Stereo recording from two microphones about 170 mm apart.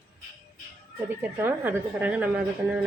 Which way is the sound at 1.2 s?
10° right (ahead or behind).